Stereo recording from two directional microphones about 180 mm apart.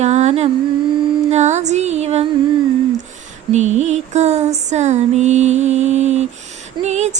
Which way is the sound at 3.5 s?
40° right (ahead or behind).